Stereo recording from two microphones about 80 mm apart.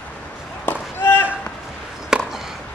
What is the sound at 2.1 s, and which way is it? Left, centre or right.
Chop, centre.